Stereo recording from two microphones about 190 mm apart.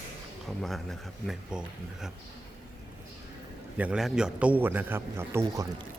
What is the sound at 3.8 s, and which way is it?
A man's voice, 5° right (ahead or behind).